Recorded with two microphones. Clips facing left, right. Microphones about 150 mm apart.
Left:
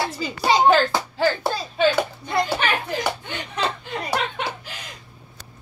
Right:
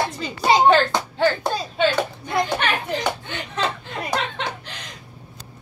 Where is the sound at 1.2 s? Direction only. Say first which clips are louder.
Right 2 dB; 5° left (ahead or behind).